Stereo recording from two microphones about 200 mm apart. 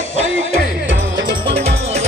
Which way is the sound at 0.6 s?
65° right (ahead or behind).